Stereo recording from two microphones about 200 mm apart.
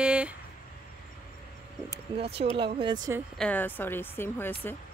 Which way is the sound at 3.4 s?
10° left (ahead or behind).